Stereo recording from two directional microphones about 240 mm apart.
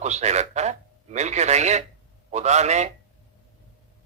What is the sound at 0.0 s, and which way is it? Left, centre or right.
A man's voice, right.